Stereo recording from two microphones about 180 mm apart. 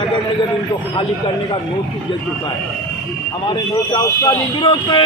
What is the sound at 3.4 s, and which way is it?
Speech, 20° left (ahead or behind).